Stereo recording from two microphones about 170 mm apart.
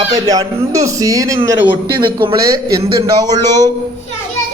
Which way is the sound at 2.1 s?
25° right (ahead or behind).